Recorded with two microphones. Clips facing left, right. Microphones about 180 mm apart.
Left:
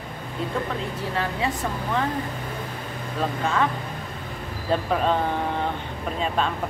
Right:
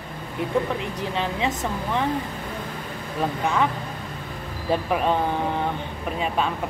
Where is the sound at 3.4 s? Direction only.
15° right (ahead or behind).